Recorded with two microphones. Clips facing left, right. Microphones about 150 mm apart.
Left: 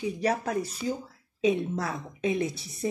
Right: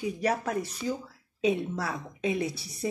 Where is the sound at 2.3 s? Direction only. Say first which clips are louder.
Left 2 dB; 25° left (ahead or behind).